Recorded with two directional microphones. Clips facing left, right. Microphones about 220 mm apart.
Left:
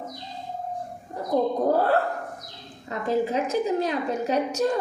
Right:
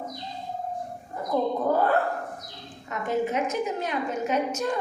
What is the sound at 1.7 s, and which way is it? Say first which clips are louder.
A woman's voice: left 1 dB; 35° left (ahead or behind).